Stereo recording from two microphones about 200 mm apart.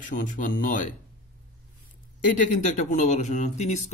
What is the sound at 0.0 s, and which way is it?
Speech, 40° left (ahead or behind).